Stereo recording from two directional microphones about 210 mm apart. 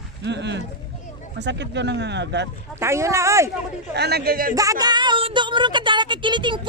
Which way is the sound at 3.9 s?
50° right (ahead or behind).